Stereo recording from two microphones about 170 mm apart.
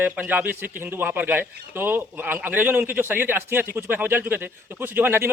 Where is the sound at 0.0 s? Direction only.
10° right (ahead or behind).